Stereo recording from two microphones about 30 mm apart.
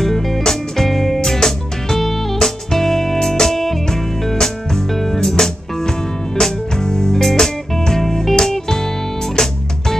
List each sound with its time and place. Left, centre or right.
0.0 s music: centre